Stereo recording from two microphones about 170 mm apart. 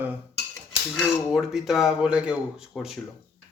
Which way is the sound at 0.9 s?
Centre (ahead or behind).